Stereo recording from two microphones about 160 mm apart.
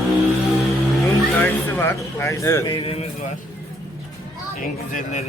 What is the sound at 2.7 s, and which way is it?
Speech, 35° left (ahead or behind).